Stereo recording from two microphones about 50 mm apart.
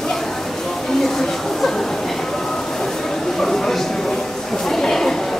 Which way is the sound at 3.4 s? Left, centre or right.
Centre.